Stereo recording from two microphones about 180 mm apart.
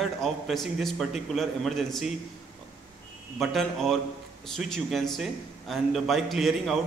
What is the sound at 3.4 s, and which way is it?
A man's voice, centre (ahead or behind).